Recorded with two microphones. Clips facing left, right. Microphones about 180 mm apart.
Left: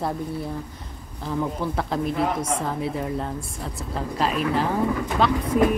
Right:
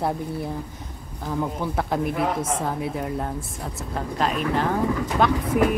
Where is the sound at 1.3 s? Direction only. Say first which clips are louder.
Even; 5° right (ahead or behind).